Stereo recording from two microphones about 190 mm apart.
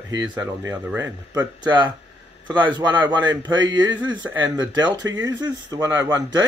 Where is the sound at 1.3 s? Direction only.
20° right (ahead or behind).